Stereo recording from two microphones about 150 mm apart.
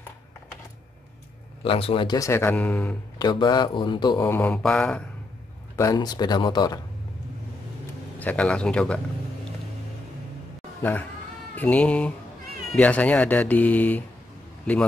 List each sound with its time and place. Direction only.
1.6 s a man's voice: 40° left (ahead or behind)
2.1 s speech: 20° left (ahead or behind)
3.2 s a man's voice: 30° left (ahead or behind)
4.2 s speech: 10° left (ahead or behind)
5.8 s speech: 25° left (ahead or behind)
8.2 s a man's voice: 10° left (ahead or behind)
10.8 s speech: 15° left (ahead or behind)